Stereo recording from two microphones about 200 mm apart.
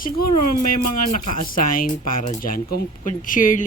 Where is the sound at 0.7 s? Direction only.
40° left (ahead or behind).